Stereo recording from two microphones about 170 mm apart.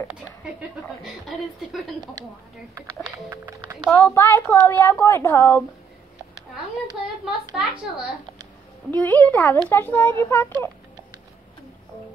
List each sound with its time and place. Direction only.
0.8 s a woman's voice: centre (ahead or behind)
3.3 s speech: 15° right (ahead or behind)
3.8 s a woman's voice: 10° left (ahead or behind)
7.5 s a woman's voice: 5° right (ahead or behind)
8.9 s a woman's voice: 10° left (ahead or behind)